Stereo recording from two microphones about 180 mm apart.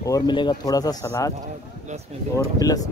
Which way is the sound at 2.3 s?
20° left (ahead or behind).